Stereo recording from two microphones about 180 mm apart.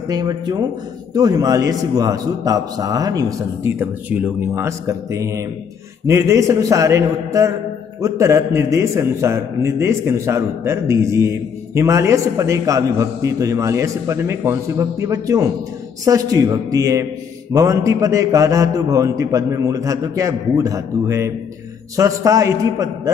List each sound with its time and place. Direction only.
0.1 s a man's voice: 20° right (ahead or behind)